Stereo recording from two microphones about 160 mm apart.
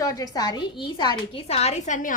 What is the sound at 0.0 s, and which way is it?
A woman's voice, 20° left (ahead or behind).